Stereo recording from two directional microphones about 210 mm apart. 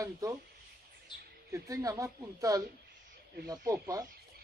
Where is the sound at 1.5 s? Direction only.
15° right (ahead or behind).